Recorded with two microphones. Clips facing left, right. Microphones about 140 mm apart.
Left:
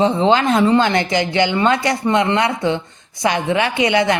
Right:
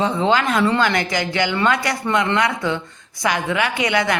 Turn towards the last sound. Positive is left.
turn(degrees=25)  # may be behind; listen again after turning